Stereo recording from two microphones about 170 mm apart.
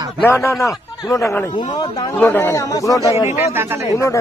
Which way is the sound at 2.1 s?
10° left (ahead or behind).